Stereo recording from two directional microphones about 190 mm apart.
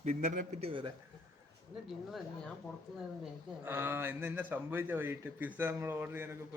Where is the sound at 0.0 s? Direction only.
40° right (ahead or behind).